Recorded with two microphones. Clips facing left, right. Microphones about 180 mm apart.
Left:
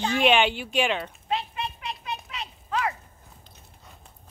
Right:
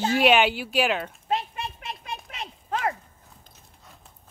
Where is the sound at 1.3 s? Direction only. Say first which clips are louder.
Right 1 dB; 45° right (ahead or behind).